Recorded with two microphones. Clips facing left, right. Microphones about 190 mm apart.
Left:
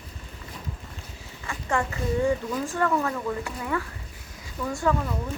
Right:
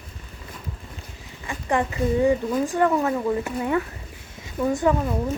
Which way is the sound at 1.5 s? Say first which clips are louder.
Right 4 dB; 15° right (ahead or behind).